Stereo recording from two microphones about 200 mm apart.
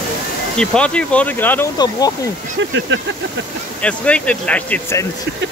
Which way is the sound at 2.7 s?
65° right (ahead or behind).